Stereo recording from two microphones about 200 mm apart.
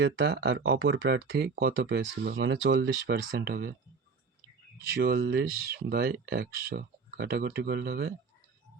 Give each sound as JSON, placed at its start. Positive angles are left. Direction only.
{"t": 0.0, "sound": "speech", "side_deg": -60}
{"t": 4.9, "sound": "speech", "side_deg": -50}